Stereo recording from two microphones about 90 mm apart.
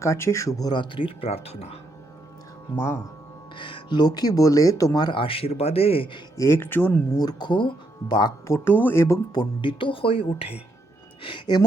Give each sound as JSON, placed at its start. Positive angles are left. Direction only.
{"t": 0.0, "sound": "speech", "side_deg": 30}
{"t": 0.7, "sound": "speech", "side_deg": 65}
{"t": 2.7, "sound": "speech", "side_deg": 25}
{"t": 3.5, "sound": "speech", "side_deg": 65}
{"t": 6.3, "sound": "speech", "side_deg": 30}
{"t": 7.1, "sound": "speech", "side_deg": 50}
{"t": 8.4, "sound": "speech", "side_deg": 25}
{"t": 9.3, "sound": "speech", "side_deg": 60}
{"t": 11.2, "sound": "speech", "side_deg": 70}